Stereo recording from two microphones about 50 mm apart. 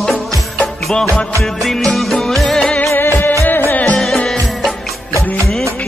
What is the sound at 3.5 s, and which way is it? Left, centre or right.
Music, left.